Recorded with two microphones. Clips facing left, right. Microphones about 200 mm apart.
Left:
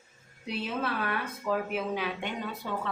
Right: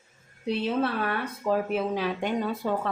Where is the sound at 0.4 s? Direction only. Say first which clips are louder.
Right 6 dB; 30° right (ahead or behind).